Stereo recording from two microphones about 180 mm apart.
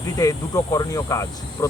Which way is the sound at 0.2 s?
20° left (ahead or behind).